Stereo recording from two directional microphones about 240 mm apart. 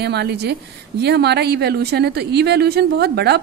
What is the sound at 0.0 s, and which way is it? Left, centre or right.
A woman's voice, right.